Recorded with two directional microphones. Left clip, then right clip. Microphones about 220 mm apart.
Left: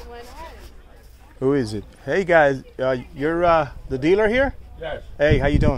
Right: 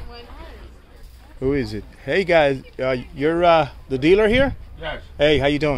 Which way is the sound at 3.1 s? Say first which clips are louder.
Right 3 dB; 5° right (ahead or behind).